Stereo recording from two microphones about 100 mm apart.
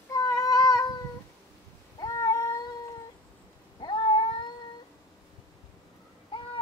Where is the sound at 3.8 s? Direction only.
50° left (ahead or behind).